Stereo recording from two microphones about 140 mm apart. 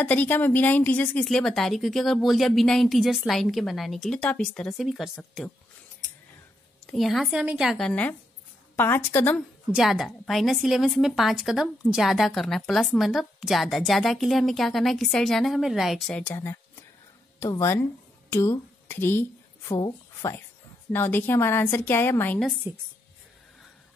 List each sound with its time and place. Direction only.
0.0 s a woman's voice: 10° left (ahead or behind)
6.9 s a woman's voice: centre (ahead or behind)
9.8 s a woman's voice: centre (ahead or behind)
16.1 s a woman's voice: 15° left (ahead or behind)
22.7 s speech: 15° right (ahead or behind)